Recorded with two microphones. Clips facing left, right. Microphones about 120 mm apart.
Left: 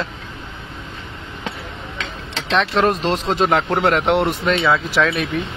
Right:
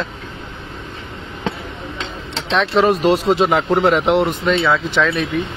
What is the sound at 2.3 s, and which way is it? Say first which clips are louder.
Speech: right 2 dB; centre (ahead or behind).